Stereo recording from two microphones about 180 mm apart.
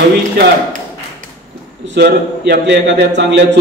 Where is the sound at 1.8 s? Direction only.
70° right (ahead or behind).